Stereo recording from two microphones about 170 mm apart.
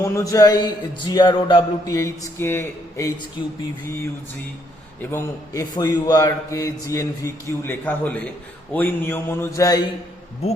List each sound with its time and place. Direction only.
0.0 s a man's voice: 20° left (ahead or behind)
2.0 s speech: 15° left (ahead or behind)
5.1 s a man's voice: 20° left (ahead or behind)